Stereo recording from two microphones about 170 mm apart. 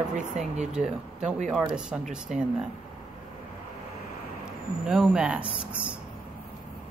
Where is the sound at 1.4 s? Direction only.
5° right (ahead or behind).